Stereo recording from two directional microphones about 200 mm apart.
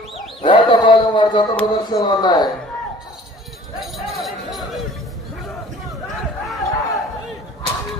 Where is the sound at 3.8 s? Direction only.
Centre (ahead or behind).